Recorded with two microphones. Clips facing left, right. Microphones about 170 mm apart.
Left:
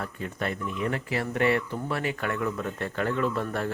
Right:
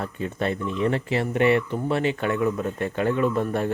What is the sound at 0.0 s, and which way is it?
Speech, 25° right (ahead or behind).